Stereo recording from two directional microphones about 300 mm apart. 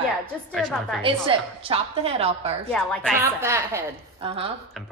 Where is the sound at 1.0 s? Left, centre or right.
Centre.